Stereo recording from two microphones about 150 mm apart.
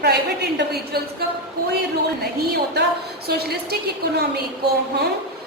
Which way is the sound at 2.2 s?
90° right.